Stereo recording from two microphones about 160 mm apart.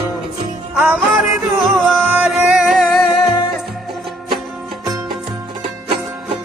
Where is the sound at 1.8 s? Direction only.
5° left (ahead or behind).